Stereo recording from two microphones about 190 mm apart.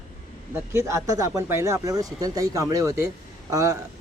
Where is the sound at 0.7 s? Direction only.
15° right (ahead or behind).